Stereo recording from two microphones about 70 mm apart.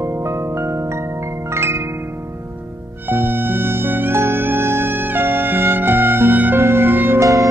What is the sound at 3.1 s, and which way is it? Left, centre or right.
Music, right.